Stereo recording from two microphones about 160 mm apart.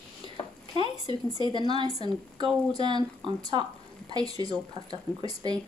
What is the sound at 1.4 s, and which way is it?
Speech, 30° left (ahead or behind).